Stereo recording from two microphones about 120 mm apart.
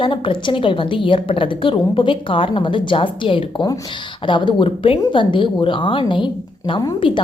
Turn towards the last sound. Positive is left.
turn(degrees=40)  # may be behind; listen again after turning